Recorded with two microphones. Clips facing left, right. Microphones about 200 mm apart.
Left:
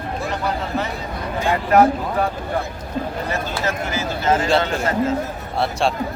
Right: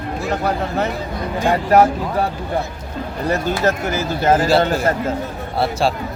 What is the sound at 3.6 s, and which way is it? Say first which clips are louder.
Speech: right 5 dB; 50° right (ahead or behind).